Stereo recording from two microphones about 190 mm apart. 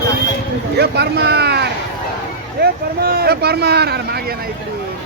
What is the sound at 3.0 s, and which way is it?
Speech, 55° right (ahead or behind).